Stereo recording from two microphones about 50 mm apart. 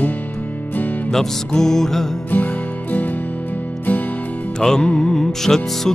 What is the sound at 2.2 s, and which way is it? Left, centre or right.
Music, left.